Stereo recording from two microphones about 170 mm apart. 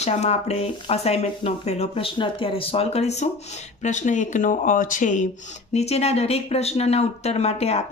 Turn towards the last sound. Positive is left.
turn(degrees=40)  # may be behind; listen again after turning